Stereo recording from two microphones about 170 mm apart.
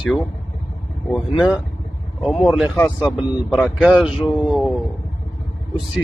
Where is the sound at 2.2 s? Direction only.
Centre (ahead or behind).